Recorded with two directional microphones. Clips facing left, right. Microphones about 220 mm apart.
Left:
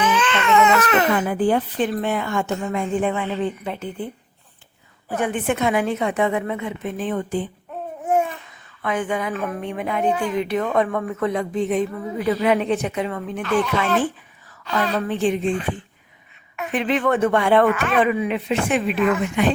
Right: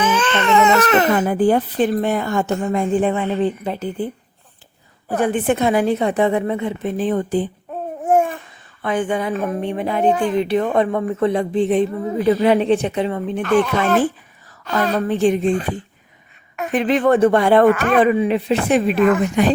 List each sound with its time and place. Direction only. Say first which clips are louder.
0.0 s baby cry: right 2 dB; 45° right (ahead or behind)
0.3 s a woman's voice: right 3 dB; 35° right (ahead or behind)
5.1 s a woman's voice: right 4 dB; 35° right (ahead or behind)
8.0 s babbling: right 4 dB; 50° right (ahead or behind)
8.8 s a woman's voice: right 3 dB; 30° right (ahead or behind)
13.6 s a woman's voice: right 3 dB; 45° right (ahead or behind)